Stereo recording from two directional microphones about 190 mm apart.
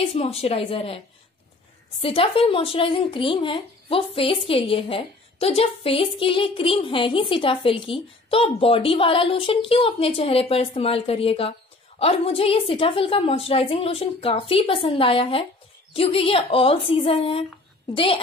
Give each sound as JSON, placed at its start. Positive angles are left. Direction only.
{"t": 0.0, "sound": "a woman's voice", "side_deg": 30}